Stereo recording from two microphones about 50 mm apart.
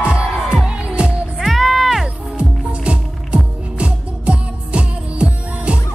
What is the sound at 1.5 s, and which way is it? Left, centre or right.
Music, centre.